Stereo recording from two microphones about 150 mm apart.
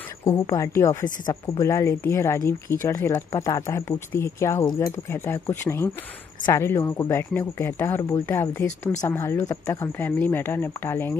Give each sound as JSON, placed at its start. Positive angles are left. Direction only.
{"t": 0.2, "sound": "speech", "side_deg": 20}